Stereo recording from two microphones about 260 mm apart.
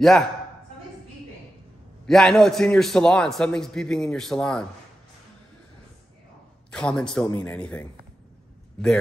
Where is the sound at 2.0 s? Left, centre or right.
Centre.